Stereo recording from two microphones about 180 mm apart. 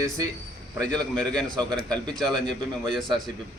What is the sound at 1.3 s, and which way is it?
A man's voice, 5° left (ahead or behind).